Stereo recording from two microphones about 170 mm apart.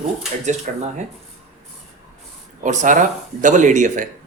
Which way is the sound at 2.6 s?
45° right (ahead or behind).